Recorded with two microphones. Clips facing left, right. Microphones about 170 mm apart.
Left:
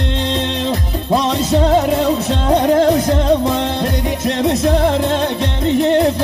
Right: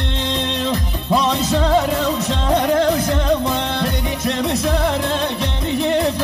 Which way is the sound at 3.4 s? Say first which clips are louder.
Left 4 dB; 50° left (ahead or behind).